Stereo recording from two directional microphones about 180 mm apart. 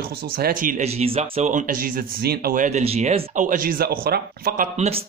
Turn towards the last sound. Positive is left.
turn(degrees=-40)  # may be behind; listen again after turning